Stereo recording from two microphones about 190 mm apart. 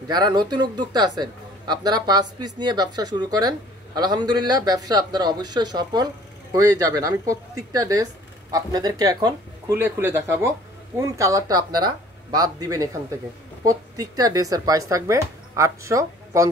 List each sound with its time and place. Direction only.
0.1 s a man's voice: 20° right (ahead or behind)